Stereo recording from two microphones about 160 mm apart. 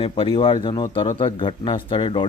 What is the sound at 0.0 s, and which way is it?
Speech, 35° left (ahead or behind).